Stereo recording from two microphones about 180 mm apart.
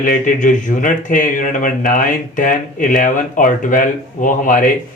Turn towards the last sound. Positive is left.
turn(degrees=50)  # may be behind; listen again after turning